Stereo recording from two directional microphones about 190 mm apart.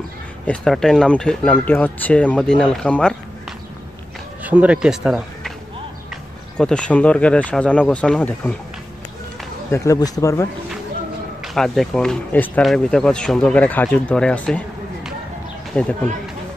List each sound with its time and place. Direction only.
0.5 s speech: centre (ahead or behind)
4.4 s speech: 5° right (ahead or behind)
6.5 s speech: 5° left (ahead or behind)
9.7 s speech: 20° left (ahead or behind)
11.4 s speech: centre (ahead or behind)
15.7 s speech: 5° left (ahead or behind)